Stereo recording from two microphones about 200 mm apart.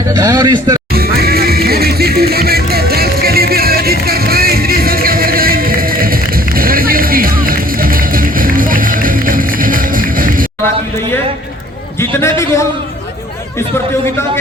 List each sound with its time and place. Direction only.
0.2 s a man's voice: 20° right (ahead or behind)
0.9 s music: 50° right (ahead or behind)
11.9 s a man's voice: 15° left (ahead or behind)